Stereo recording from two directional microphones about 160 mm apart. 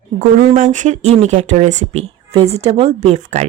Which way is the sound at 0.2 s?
50° right (ahead or behind).